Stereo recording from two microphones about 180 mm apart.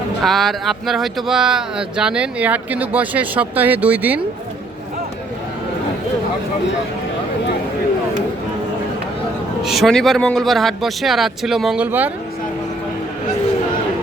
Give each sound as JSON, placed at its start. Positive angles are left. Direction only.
{"t": 0.2, "sound": "speech", "side_deg": 0}
{"t": 9.6, "sound": "speech", "side_deg": 0}